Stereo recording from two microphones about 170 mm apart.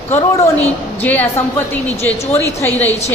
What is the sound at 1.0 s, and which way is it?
A woman's voice, 10° left (ahead or behind).